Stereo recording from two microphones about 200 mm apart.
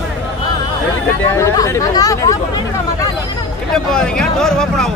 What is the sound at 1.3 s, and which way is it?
Speech, 15° left (ahead or behind).